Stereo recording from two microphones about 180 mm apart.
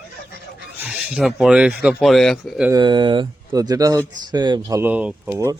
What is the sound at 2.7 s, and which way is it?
Speech, 25° right (ahead or behind).